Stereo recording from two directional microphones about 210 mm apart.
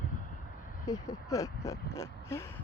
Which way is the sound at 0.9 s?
15° left (ahead or behind).